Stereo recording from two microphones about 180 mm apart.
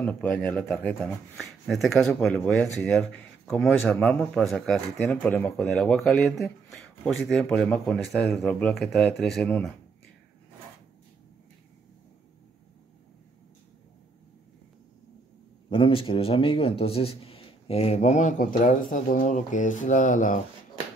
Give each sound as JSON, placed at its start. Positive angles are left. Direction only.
{"t": 0.0, "sound": "speech", "side_deg": 10}
{"t": 15.7, "sound": "a man's voice", "side_deg": 30}